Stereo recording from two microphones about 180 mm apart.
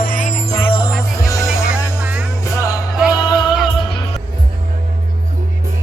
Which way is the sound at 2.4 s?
15° left (ahead or behind).